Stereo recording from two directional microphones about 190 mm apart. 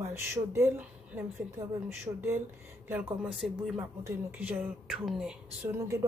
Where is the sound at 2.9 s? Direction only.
10° right (ahead or behind).